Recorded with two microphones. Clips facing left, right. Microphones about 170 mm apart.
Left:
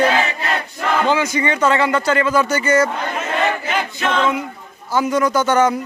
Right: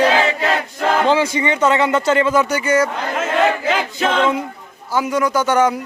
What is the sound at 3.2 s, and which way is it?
Choir, 90° right.